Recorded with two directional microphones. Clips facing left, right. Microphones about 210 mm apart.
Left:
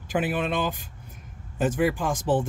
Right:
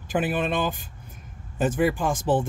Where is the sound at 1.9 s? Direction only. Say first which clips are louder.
Right 2 dB; 25° right (ahead or behind).